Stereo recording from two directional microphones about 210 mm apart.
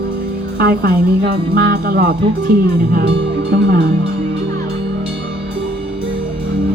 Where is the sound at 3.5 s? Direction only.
55° right (ahead or behind).